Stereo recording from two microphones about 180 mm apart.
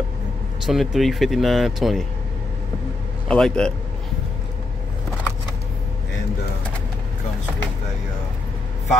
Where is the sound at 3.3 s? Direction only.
5° left (ahead or behind).